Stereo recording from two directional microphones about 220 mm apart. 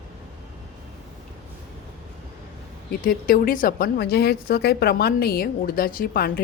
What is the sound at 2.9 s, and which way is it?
A woman's voice, 40° left (ahead or behind).